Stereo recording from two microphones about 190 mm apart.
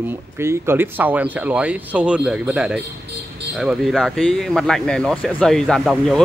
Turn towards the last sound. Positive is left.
turn(degrees=0)  # may be behind; listen again after turning